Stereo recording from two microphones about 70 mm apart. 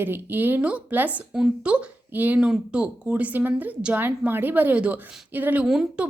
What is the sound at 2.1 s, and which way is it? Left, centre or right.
Speech, right.